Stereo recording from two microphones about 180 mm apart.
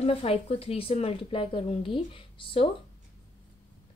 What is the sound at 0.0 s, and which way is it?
A woman's voice, 30° left (ahead or behind).